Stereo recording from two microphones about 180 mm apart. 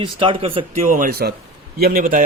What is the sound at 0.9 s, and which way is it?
A man's voice, 50° right (ahead or behind).